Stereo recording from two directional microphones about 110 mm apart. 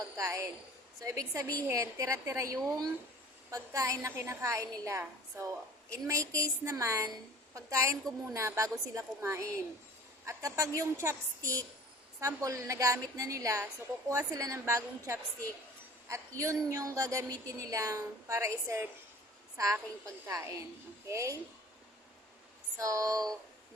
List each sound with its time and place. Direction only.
0.2 s a woman's voice: 30° right (ahead or behind)
22.8 s speech: 30° right (ahead or behind)